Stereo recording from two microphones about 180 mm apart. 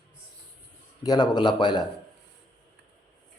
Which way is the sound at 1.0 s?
20° left (ahead or behind).